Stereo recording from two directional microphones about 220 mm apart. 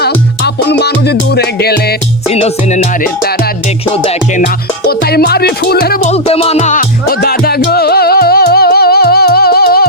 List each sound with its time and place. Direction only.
0.0 s music: 50° left (ahead or behind)
2.3 s music: 30° left (ahead or behind)
4.9 s music: 45° left (ahead or behind)
6.2 s music: 25° left (ahead or behind); by 9.8 s 45° left (ahead or behind)